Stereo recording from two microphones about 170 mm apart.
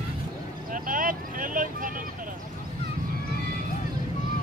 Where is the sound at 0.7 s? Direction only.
55° right (ahead or behind).